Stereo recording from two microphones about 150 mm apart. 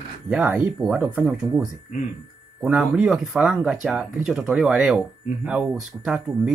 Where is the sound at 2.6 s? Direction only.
5° right (ahead or behind).